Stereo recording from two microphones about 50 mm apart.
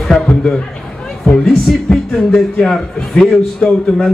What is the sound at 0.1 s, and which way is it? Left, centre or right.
Speech, centre.